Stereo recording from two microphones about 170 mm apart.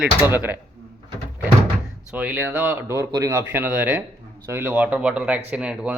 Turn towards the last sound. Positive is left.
turn(degrees=-5)  # may be behind; listen again after turning